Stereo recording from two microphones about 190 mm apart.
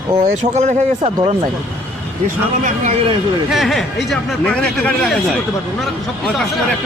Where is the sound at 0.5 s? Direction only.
35° right (ahead or behind).